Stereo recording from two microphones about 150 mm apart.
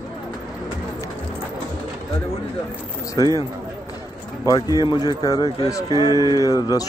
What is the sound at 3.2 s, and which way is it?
Speech, 25° left (ahead or behind).